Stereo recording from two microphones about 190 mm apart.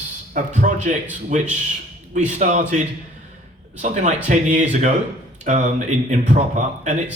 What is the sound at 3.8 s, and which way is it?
A man's voice, 40° right (ahead or behind).